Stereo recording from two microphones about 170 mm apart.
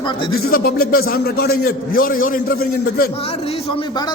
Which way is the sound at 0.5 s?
60° left (ahead or behind).